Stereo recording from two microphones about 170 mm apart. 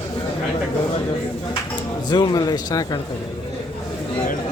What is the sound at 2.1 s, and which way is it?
Speech, 25° left (ahead or behind).